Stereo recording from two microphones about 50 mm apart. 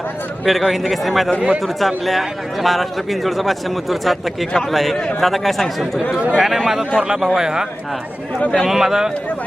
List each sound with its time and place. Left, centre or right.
0.4 s a man's voice: centre
8.4 s speech: left
8.6 s speech: centre